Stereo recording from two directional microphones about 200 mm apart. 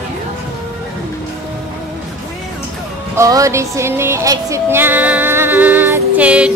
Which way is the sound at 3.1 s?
15° right (ahead or behind).